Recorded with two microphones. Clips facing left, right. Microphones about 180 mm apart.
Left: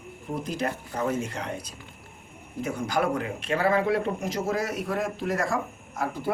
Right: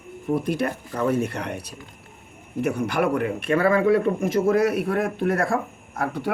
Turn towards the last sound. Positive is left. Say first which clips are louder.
# right 3 dB
turn(degrees=-65)  # may be behind; listen again after turning